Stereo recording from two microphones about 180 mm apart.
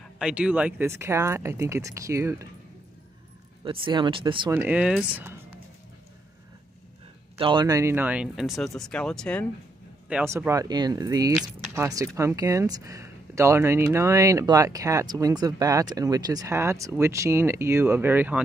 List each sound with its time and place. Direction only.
0.2 s speech: 5° right (ahead or behind)
3.6 s speech: 25° right (ahead or behind)
4.6 s speech: 10° right (ahead or behind)
7.3 s speech: 25° right (ahead or behind); by 9.5 s 5° left (ahead or behind)
10.0 s speech: 10° right (ahead or behind)